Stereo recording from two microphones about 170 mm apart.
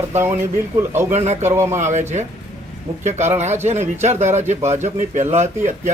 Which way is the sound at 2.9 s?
30° right (ahead or behind).